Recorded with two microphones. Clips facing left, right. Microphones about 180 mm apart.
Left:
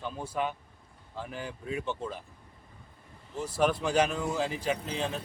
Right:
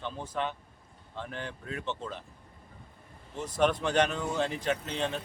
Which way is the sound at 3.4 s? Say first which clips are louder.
Even; 5° left (ahead or behind).